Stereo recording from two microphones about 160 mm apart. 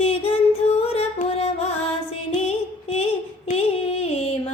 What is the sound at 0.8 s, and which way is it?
Music, 40° left (ahead or behind).